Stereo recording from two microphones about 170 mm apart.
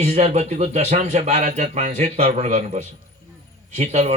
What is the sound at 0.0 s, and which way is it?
A man's voice, 40° right (ahead or behind).